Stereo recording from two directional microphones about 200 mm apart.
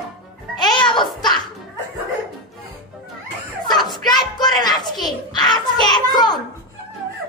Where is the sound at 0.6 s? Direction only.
20° left (ahead or behind).